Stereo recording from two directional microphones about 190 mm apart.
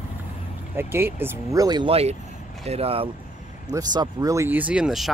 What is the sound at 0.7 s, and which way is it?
Speech, 10° right (ahead or behind).